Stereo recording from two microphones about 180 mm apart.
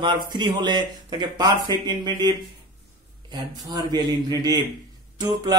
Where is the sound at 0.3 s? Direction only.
25° right (ahead or behind).